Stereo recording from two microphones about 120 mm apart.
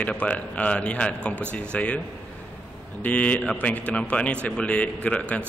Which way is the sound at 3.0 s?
10° left (ahead or behind).